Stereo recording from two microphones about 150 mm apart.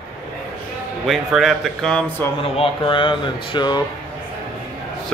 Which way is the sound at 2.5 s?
35° left (ahead or behind).